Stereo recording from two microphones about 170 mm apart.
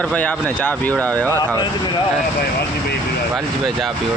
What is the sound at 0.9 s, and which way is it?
Speech, 15° right (ahead or behind).